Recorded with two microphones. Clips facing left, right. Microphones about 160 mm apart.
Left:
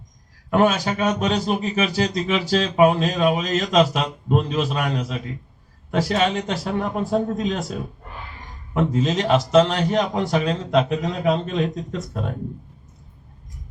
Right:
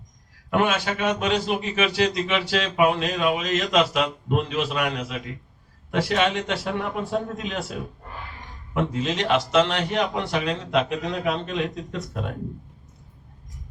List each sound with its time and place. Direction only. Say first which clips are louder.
0.5 s a man's voice: left 4 dB; 40° left (ahead or behind)